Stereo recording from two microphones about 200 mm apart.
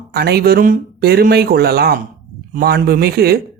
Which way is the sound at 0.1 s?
50° right (ahead or behind).